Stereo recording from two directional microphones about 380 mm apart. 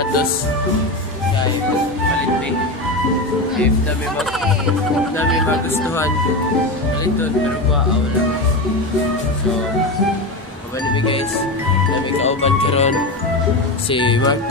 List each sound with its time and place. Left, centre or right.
12.2 s speech: centre